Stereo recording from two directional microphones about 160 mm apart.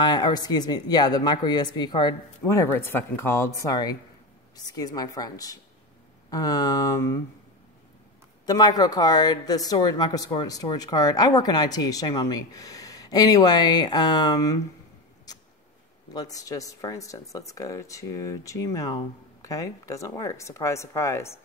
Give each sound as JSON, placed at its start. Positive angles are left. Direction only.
{"t": 0.0, "sound": "speech", "side_deg": 25}
{"t": 8.5, "sound": "speech", "side_deg": 25}
{"t": 15.3, "sound": "a sound", "side_deg": 25}
{"t": 16.1, "sound": "speech", "side_deg": 25}